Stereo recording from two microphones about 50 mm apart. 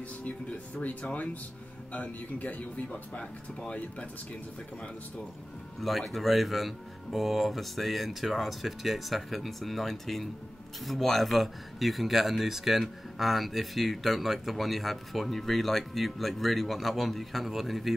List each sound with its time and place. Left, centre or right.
0.2 s speech: left
5.8 s speech: centre